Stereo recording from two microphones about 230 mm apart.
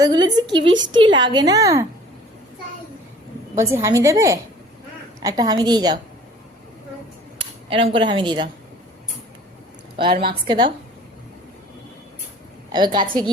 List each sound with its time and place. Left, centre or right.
0.0 s a woman's voice: centre
3.6 s a woman's voice: centre
7.3 s speech: right
10.0 s a woman's voice: right
12.7 s a woman's voice: centre